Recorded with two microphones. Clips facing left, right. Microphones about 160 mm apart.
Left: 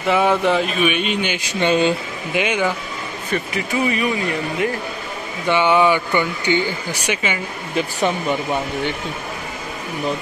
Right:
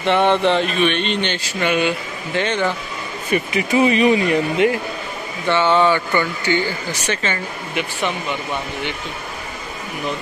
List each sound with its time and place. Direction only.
0.0 s speech: 5° left (ahead or behind); by 2.0 s 30° left (ahead or behind)
2.3 s speech: 10° left (ahead or behind)
3.3 s speech: 20° right (ahead or behind)
5.5 s speech: 10° left (ahead or behind)
7.7 s speech: 40° left (ahead or behind)